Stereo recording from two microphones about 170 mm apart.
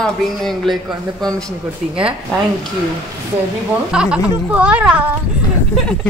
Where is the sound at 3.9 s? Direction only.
5° right (ahead or behind).